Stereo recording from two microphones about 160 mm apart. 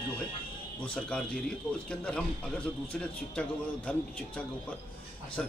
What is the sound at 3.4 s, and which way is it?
Speech, 10° left (ahead or behind).